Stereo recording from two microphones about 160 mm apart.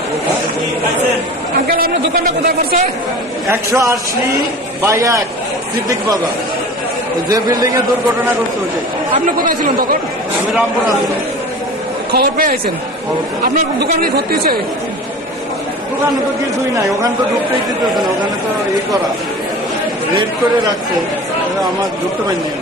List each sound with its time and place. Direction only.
1.7 s speech: 70° right (ahead or behind)
3.4 s a man's voice: 20° right (ahead or behind)
7.2 s a man's voice: 25° right (ahead or behind)
9.2 s speech: 60° right (ahead or behind)
12.1 s speech: 65° right (ahead or behind)
13.7 s speech: 80° right